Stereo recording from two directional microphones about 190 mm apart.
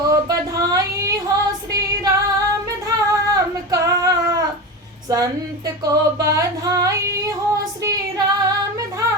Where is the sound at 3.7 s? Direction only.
20° right (ahead or behind).